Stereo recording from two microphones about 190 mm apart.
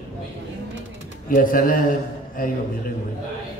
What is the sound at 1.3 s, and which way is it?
Speech, 45° left (ahead or behind).